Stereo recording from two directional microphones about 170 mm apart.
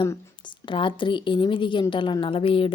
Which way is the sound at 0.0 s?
25° left (ahead or behind).